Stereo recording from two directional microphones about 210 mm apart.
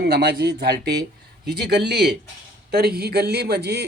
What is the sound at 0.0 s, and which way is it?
A man's voice, 50° right (ahead or behind).